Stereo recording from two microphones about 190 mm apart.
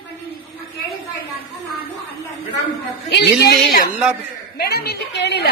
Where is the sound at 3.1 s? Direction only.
60° left (ahead or behind).